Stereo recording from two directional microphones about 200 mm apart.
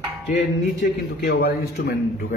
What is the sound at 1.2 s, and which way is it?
Speech, 55° left (ahead or behind).